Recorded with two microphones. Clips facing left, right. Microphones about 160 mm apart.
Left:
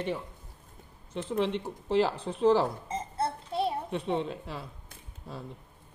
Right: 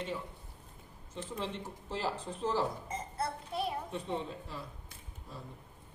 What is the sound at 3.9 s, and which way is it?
Speech, 70° left (ahead or behind).